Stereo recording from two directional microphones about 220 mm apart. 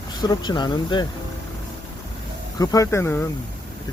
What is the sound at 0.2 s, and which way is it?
Speech, 20° left (ahead or behind).